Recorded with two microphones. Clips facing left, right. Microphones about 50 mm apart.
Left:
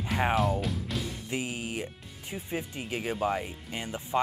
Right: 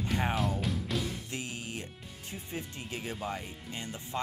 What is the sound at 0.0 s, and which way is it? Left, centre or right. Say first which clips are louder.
Speech: left 4 dB; centre.